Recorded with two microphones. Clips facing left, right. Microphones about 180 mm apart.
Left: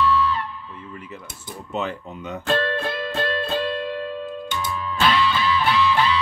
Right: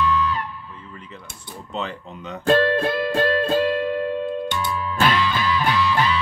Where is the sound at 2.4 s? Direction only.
40° right (ahead or behind).